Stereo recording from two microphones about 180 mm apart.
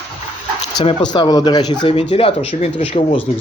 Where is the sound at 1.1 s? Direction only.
20° left (ahead or behind).